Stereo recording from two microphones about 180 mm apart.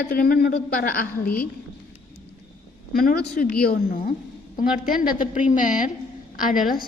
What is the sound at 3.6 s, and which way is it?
Speech, 55° left (ahead or behind).